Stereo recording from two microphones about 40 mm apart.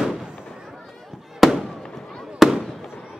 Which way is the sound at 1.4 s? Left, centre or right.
Centre.